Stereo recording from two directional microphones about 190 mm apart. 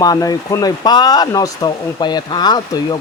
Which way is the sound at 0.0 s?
20° left (ahead or behind).